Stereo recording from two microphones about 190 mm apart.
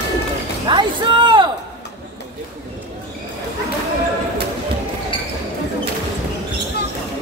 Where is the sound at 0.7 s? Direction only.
25° right (ahead or behind).